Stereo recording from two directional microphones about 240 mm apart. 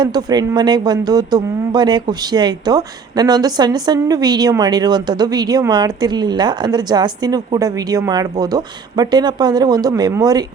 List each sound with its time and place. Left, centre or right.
0.0 s speech: centre